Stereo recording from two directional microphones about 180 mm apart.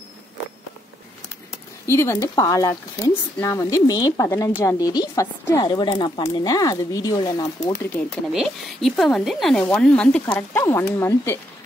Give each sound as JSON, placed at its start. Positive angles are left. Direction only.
{"t": 1.9, "sound": "speech", "side_deg": 15}
{"t": 8.3, "sound": "speech", "side_deg": 0}